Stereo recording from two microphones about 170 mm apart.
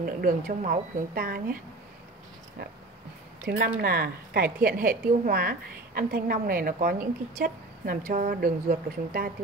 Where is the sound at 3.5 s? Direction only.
65° right (ahead or behind).